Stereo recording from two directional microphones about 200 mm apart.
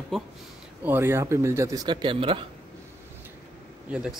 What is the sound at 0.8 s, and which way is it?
Speech, 10° right (ahead or behind).